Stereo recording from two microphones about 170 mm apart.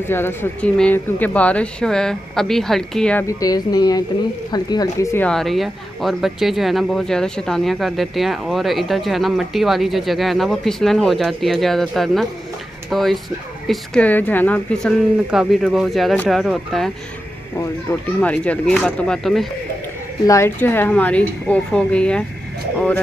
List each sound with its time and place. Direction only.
0.1 s speech: 15° left (ahead or behind)
3.3 s speech: 20° left (ahead or behind); by 16.9 s centre (ahead or behind)
18.2 s speech: 10° left (ahead or behind)
20.2 s speech: 15° left (ahead or behind)